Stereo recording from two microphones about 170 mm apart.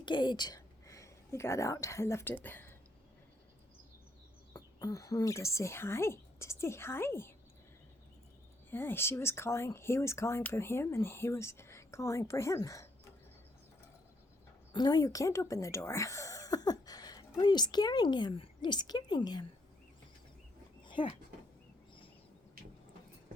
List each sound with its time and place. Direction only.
0.0 s a woman's voice: 25° left (ahead or behind); by 2.7 s 10° left (ahead or behind)
4.5 s speech: 20° left (ahead or behind)
8.7 s speech: 15° left (ahead or behind)
14.7 s speech: 25° left (ahead or behind)
20.8 s a sound: 30° left (ahead or behind)